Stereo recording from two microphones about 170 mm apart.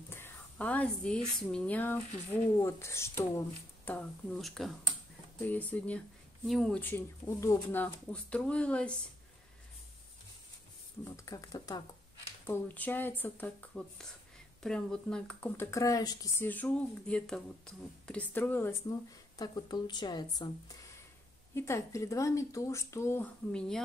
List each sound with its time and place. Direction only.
0.1 s speech: 10° left (ahead or behind)
11.1 s speech: 20° left (ahead or behind)
16.4 s speech: 10° left (ahead or behind)